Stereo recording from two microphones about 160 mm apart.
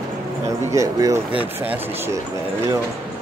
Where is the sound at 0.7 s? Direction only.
20° right (ahead or behind).